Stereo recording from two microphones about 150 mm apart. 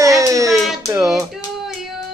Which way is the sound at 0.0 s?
20° right (ahead or behind).